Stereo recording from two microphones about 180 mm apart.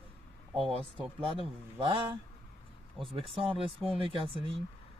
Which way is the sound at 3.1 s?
30° right (ahead or behind).